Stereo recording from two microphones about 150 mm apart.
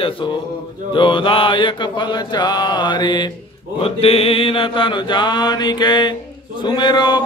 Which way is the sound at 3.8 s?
40° left (ahead or behind).